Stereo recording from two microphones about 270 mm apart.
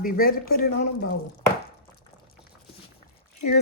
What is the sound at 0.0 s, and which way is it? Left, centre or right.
Speech, left.